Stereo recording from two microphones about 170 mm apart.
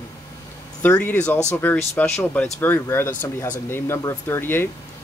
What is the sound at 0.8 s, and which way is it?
Speech, 10° left (ahead or behind).